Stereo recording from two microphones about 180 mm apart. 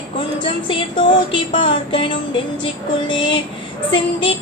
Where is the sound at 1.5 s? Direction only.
30° left (ahead or behind).